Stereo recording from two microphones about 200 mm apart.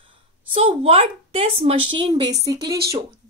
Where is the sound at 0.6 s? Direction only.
30° right (ahead or behind).